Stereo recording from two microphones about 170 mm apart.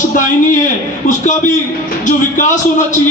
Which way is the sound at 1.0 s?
45° left (ahead or behind).